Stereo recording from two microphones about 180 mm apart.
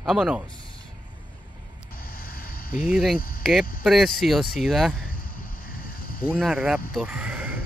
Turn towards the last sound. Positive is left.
turn(degrees=-10)  # may be behind; listen again after turning